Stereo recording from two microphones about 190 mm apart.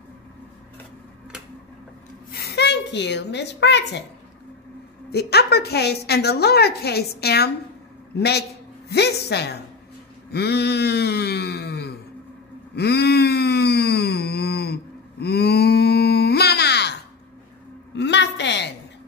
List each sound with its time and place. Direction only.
2.3 s a woman's voice: 60° left (ahead or behind)
5.1 s a woman's voice: 60° left (ahead or behind)
12.7 s a sound: 60° left (ahead or behind)